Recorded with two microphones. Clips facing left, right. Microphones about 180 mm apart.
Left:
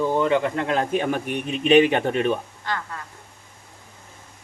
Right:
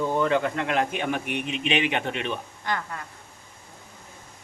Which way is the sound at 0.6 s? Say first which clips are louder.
Left 3 dB; 35° left (ahead or behind).